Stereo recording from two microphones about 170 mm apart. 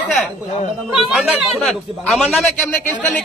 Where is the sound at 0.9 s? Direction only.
Centre (ahead or behind).